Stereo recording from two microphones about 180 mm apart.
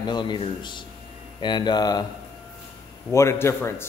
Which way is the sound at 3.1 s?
15° left (ahead or behind).